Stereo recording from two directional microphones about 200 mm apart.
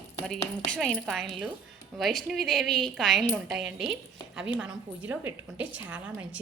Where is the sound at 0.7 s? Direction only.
5° left (ahead or behind).